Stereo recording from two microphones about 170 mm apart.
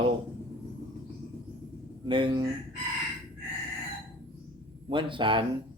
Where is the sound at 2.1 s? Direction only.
30° right (ahead or behind).